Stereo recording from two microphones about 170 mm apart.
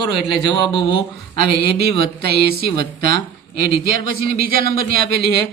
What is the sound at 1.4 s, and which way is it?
A man's voice, 65° right (ahead or behind).